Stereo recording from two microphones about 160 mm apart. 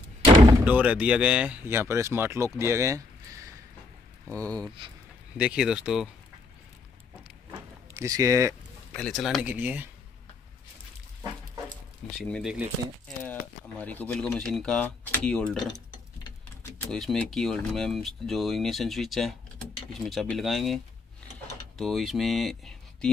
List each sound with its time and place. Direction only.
0.2 s slam: 30° right (ahead or behind)
0.7 s speech: 10° right (ahead or behind)
4.3 s speech: 10° left (ahead or behind)
5.4 s speech: 5° right (ahead or behind)
7.9 s speech: 20° right (ahead or behind)
8.9 s speech: centre (ahead or behind)
12.2 s speech: centre (ahead or behind)
13.7 s speech: 10° left (ahead or behind)
16.9 s speech: 5° left (ahead or behind)